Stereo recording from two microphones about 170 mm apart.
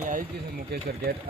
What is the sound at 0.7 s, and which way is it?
Speech, 65° right (ahead or behind).